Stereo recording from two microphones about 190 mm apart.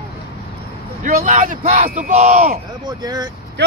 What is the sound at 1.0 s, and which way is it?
Speech, 40° right (ahead or behind).